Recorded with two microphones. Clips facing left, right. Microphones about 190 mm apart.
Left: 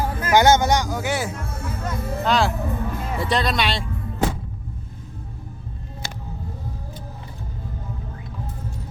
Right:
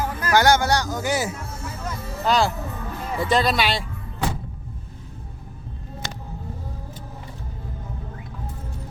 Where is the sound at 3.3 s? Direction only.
Centre (ahead or behind).